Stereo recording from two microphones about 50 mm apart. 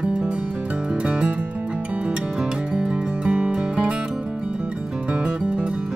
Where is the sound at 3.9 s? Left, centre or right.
Right.